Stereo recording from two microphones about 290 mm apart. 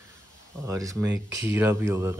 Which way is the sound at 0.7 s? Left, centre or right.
Centre.